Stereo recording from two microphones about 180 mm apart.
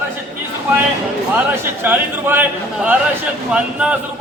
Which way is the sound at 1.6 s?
10° right (ahead or behind).